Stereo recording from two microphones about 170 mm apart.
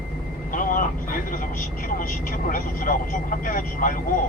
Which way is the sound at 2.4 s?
50° left (ahead or behind).